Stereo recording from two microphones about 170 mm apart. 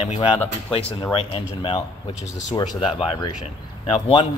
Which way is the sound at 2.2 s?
90° left.